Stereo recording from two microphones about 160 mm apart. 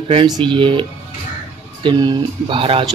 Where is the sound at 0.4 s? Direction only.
30° right (ahead or behind).